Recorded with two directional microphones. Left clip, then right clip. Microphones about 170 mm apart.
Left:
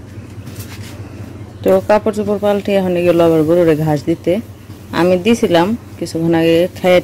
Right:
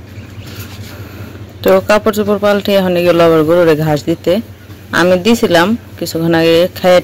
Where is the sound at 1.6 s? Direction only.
5° left (ahead or behind).